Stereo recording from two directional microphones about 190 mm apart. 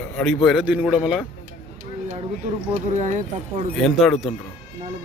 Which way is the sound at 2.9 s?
40° right (ahead or behind).